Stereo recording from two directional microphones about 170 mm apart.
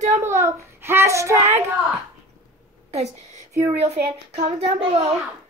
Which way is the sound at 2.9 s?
40° right (ahead or behind).